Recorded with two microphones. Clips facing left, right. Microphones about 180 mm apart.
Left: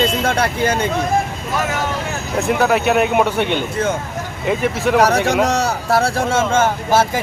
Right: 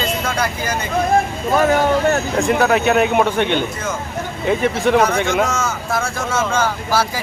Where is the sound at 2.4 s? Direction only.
5° left (ahead or behind).